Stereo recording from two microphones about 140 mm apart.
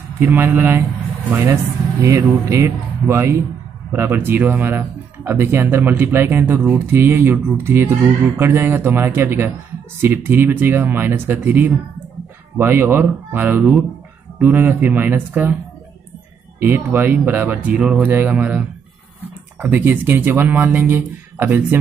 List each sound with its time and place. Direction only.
0.2 s speech: 15° right (ahead or behind)
16.5 s speech: 15° right (ahead or behind)